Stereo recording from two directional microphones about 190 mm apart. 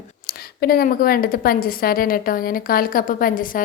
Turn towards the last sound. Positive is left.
turn(degrees=45)  # may be behind; listen again after turning